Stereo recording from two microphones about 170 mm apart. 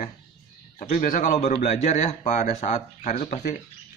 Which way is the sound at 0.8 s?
50° left (ahead or behind).